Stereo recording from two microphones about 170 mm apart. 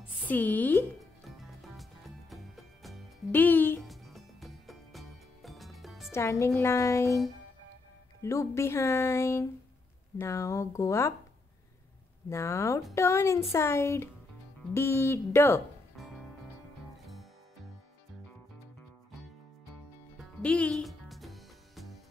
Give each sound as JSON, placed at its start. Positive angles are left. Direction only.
{"t": 0.3, "sound": "speech", "side_deg": 10}
{"t": 1.8, "sound": "music", "side_deg": 0}
{"t": 3.3, "sound": "speech", "side_deg": 10}
{"t": 3.8, "sound": "music", "side_deg": 0}
{"t": 6.1, "sound": "speech", "side_deg": 15}
{"t": 8.2, "sound": "speech", "side_deg": 15}
{"t": 12.3, "sound": "speech", "side_deg": 15}
{"t": 16.0, "sound": "music", "side_deg": 0}
{"t": 20.4, "sound": "music", "side_deg": 5}